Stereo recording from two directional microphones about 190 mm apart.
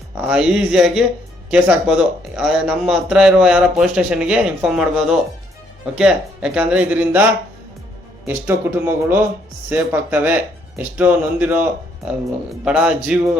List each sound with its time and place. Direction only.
0.3 s speech: 5° right (ahead or behind)
8.3 s speech: 10° right (ahead or behind)